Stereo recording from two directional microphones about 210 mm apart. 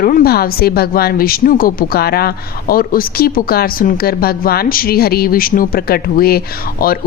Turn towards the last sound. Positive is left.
turn(degrees=45)  # may be behind; listen again after turning